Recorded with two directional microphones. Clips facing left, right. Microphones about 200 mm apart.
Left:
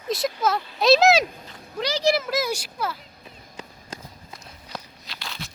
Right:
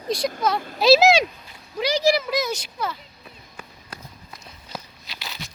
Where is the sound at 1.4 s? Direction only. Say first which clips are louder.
Right 3 dB; 10° right (ahead or behind).